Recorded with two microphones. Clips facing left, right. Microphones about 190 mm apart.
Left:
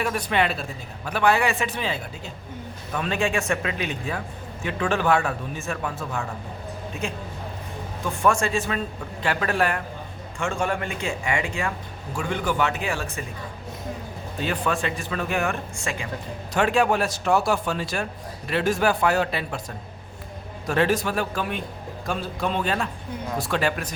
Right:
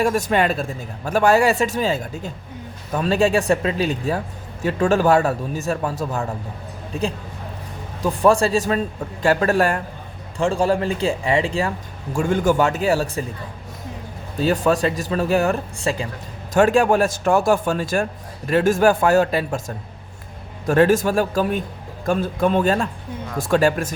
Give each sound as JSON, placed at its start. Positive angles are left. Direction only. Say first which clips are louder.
{"t": 0.0, "sound": "a man's voice", "louder": "right 5 dB", "side_deg": -45}
{"t": 8.0, "sound": "speech", "louder": "right 6 dB", "side_deg": -35}
{"t": 12.2, "sound": "speech", "louder": "right 7 dB", "side_deg": -45}
{"t": 14.4, "sound": "speech", "louder": "right 8 dB", "side_deg": -40}
{"t": 16.6, "sound": "a man's voice", "louder": "right 6 dB", "side_deg": -45}